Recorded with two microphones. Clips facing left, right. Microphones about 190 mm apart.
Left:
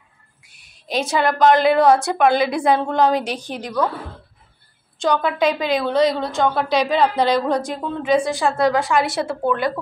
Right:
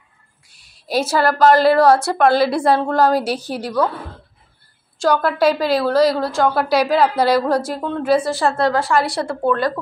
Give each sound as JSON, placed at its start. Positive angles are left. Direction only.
{"t": 0.8, "sound": "a woman's voice", "side_deg": -5}
{"t": 2.2, "sound": "a woman's voice", "side_deg": 15}
{"t": 2.9, "sound": "a woman's voice", "side_deg": -5}
{"t": 4.9, "sound": "a woman's voice", "side_deg": -5}
{"t": 9.5, "sound": "speech", "side_deg": 20}